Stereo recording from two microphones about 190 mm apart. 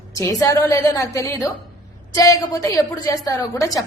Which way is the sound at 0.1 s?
20° left (ahead or behind).